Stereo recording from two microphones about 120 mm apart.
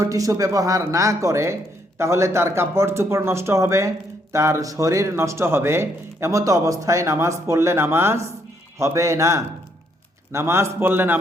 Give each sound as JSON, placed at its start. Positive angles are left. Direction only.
{"t": 0.0, "sound": "speech", "side_deg": -25}